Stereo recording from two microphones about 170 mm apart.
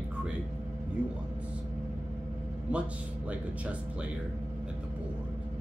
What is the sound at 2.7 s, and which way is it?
Speech, 5° right (ahead or behind).